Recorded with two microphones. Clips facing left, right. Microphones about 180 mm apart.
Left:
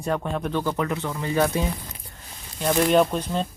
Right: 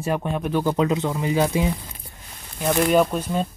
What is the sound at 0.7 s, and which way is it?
Speech, 20° right (ahead or behind).